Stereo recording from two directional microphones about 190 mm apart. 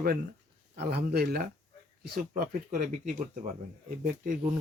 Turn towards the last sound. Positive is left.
turn(degrees=-45)  # may be behind; listen again after turning